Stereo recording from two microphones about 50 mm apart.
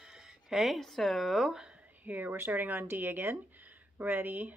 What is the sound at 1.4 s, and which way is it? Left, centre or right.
Speech, centre.